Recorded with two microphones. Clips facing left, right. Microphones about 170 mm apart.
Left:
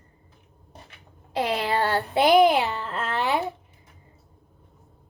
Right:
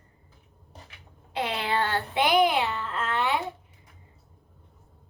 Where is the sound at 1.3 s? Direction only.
35° left (ahead or behind).